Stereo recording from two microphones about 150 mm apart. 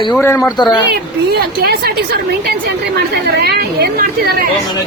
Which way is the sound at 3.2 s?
90° right.